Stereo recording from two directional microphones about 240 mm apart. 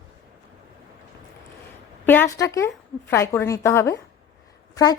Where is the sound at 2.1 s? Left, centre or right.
Centre.